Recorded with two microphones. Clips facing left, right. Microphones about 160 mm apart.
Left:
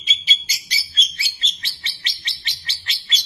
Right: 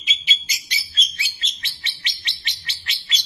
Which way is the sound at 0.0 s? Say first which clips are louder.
Even; 35° left (ahead or behind).